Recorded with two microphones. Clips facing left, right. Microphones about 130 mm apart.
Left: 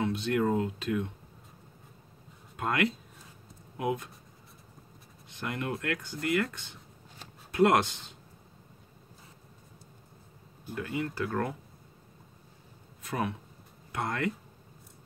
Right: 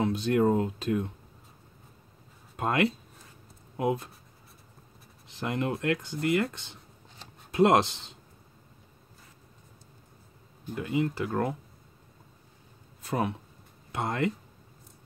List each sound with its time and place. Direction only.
0.0 s speech: 40° right (ahead or behind)
2.5 s speech: 30° right (ahead or behind)
5.4 s speech: 25° right (ahead or behind)
10.7 s speech: 20° right (ahead or behind)
13.0 s speech: 35° right (ahead or behind)